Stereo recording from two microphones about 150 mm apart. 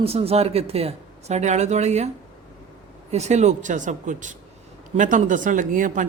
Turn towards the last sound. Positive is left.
turn(degrees=-60)  # may be behind; listen again after turning